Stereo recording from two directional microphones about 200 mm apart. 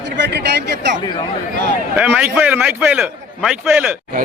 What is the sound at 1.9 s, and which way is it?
A man's voice, 10° right (ahead or behind).